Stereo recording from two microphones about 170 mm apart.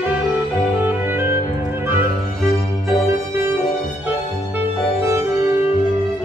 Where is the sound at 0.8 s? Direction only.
10° right (ahead or behind).